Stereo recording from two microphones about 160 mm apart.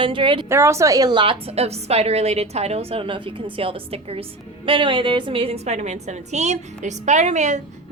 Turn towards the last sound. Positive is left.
turn(degrees=-45)  # may be behind; listen again after turning